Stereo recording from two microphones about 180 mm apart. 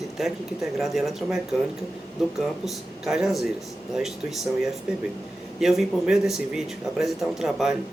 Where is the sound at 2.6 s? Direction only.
Centre (ahead or behind).